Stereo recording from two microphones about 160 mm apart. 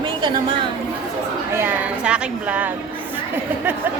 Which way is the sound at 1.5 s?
15° right (ahead or behind).